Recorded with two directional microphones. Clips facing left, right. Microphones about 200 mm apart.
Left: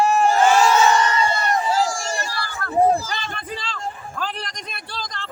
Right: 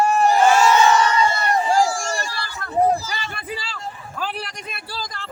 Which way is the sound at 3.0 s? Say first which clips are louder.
Even; 10° right (ahead or behind).